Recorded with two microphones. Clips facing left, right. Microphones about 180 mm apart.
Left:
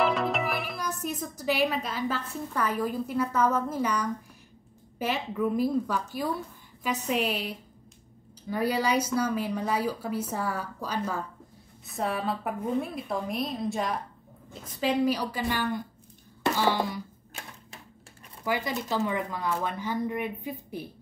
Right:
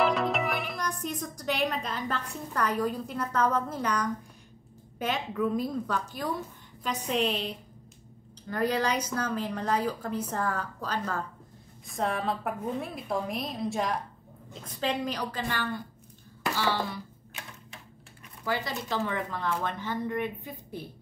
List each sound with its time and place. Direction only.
0.0 s a woman's voice: centre (ahead or behind)
16.4 s a sound: 15° left (ahead or behind)
18.4 s a woman's voice: 15° left (ahead or behind)